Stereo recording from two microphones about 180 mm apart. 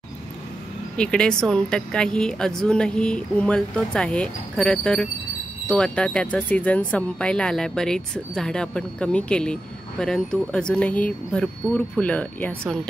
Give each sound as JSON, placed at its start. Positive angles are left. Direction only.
{"t": 0.9, "sound": "speech", "side_deg": 5}